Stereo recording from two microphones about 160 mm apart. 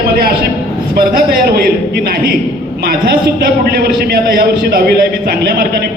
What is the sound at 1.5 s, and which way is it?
A man's voice, 75° right (ahead or behind).